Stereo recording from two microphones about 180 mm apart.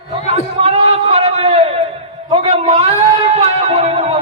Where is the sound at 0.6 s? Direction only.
35° right (ahead or behind).